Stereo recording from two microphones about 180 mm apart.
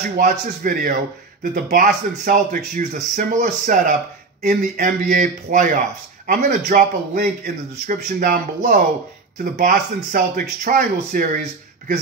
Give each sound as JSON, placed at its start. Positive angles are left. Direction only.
{"t": 0.2, "sound": "a man's voice", "side_deg": -50}